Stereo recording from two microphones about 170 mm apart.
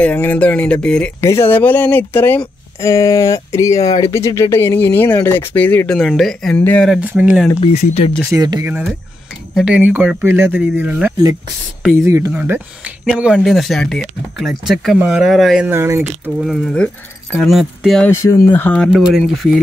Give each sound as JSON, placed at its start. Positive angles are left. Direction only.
{"t": 0.0, "sound": "speech", "side_deg": 10}
{"t": 7.0, "sound": "speech", "side_deg": -5}
{"t": 7.6, "sound": "speech", "side_deg": 40}
{"t": 8.3, "sound": "speech", "side_deg": -25}
{"t": 8.6, "sound": "speech", "side_deg": -10}
{"t": 15.7, "sound": "speech", "side_deg": -15}
{"t": 16.3, "sound": "speech", "side_deg": 0}
{"t": 18.1, "sound": "speech", "side_deg": 15}
{"t": 18.9, "sound": "speech", "side_deg": 0}